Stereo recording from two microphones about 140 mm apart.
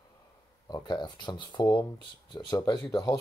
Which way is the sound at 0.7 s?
30° left (ahead or behind).